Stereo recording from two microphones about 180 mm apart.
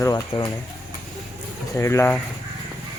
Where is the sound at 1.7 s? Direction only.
15° left (ahead or behind).